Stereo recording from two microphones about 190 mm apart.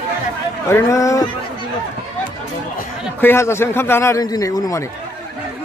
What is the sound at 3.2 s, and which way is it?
Speech, 10° left (ahead or behind).